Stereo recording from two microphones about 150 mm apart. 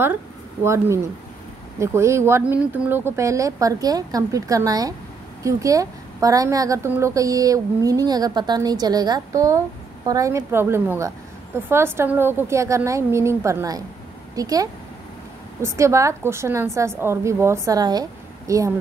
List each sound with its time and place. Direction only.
1.8 s a woman's voice: 20° right (ahead or behind)